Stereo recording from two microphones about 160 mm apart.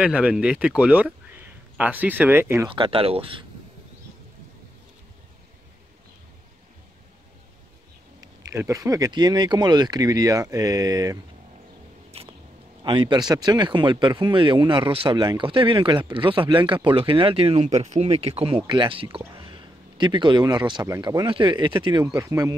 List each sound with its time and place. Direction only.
0.0 s speech: 5° right (ahead or behind)
2.7 s speech: 35° right (ahead or behind)
8.2 s speech: 20° right (ahead or behind)
12.8 s speech: 30° right (ahead or behind)
21.3 s speech: 30° right (ahead or behind)